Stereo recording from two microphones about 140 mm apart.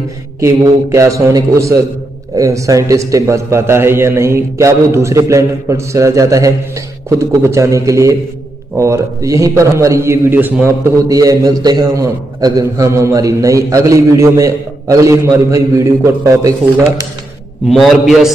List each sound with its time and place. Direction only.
0.4 s a man's voice: 20° right (ahead or behind)
11.1 s a man's voice: 25° right (ahead or behind)
17.6 s a man's voice: centre (ahead or behind)